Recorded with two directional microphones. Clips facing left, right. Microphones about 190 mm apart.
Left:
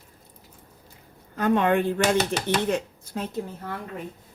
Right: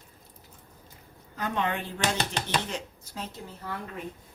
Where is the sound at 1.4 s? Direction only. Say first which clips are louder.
Left 9 dB; 55° left (ahead or behind).